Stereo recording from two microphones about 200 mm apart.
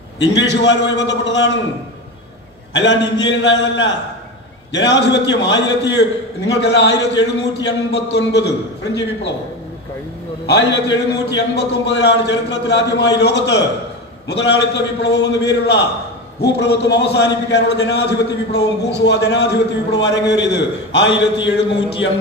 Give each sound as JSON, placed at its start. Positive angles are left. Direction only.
{"t": 0.2, "sound": "a man's voice", "side_deg": 65}
{"t": 2.7, "sound": "a man's voice", "side_deg": 65}
{"t": 10.4, "sound": "a man's voice", "side_deg": 65}
{"t": 21.7, "sound": "speech", "side_deg": 25}